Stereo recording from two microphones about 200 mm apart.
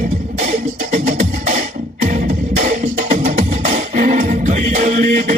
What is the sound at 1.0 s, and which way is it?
Music, 40° right (ahead or behind).